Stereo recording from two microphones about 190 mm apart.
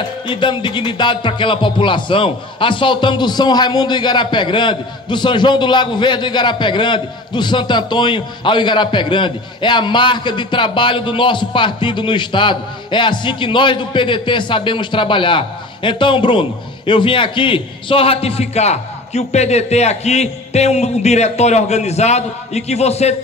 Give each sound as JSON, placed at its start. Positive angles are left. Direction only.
{"t": 0.3, "sound": "a man's voice", "side_deg": 25}